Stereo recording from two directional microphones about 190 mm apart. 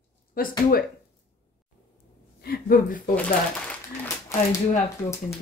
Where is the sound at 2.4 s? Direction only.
55° left (ahead or behind).